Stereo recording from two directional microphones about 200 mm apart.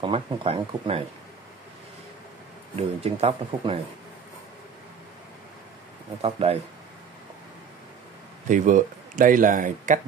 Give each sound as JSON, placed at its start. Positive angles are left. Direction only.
{"t": 0.0, "sound": "speech", "side_deg": -30}
{"t": 2.7, "sound": "speech", "side_deg": -30}
{"t": 6.2, "sound": "speech", "side_deg": -30}
{"t": 8.5, "sound": "speech", "side_deg": -40}